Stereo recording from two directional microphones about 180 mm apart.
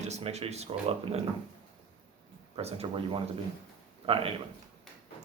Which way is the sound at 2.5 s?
35° right (ahead or behind).